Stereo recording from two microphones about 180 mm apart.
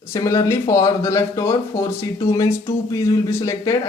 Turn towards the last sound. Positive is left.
turn(degrees=20)  # may be behind; listen again after turning